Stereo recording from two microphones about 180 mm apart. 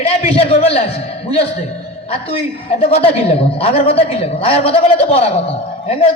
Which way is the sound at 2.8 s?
35° left (ahead or behind).